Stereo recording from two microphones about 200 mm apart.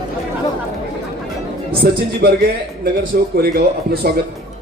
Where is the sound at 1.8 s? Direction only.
50° right (ahead or behind).